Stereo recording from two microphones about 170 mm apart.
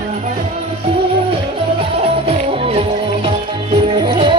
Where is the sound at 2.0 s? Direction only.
35° right (ahead or behind).